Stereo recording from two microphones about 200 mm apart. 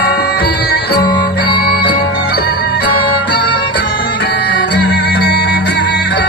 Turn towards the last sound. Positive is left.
turn(degrees=55)  # may be behind; listen again after turning